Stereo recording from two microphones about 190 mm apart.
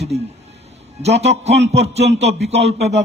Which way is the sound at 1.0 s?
35° right (ahead or behind).